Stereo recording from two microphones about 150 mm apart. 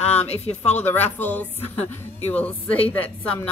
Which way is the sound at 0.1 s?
45° left (ahead or behind).